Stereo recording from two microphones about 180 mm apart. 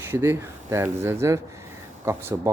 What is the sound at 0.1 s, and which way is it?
Speech, 15° right (ahead or behind).